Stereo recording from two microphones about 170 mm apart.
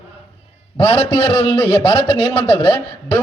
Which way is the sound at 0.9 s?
35° left (ahead or behind).